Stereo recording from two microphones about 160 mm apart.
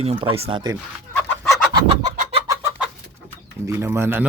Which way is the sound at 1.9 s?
40° right (ahead or behind).